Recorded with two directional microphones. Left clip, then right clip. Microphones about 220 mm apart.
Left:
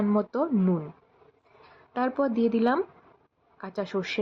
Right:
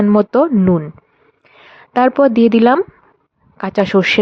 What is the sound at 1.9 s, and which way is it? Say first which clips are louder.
Speech: right 16 dB; 40° right (ahead or behind).